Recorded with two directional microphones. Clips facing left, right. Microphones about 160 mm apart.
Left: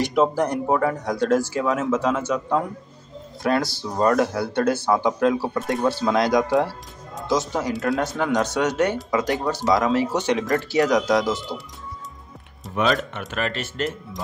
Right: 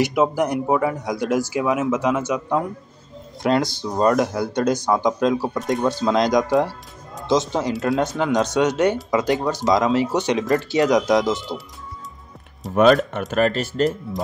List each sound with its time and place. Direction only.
0.0 s speech: 10° right (ahead or behind)
12.7 s speech: 45° right (ahead or behind)